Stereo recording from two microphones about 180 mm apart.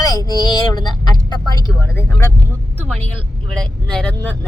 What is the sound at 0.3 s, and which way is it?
Vehicle, 20° left (ahead or behind).